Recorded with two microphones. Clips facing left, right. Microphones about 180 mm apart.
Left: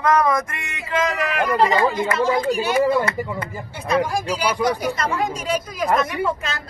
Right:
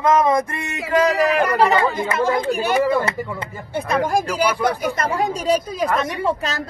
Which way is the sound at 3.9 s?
50° right (ahead or behind).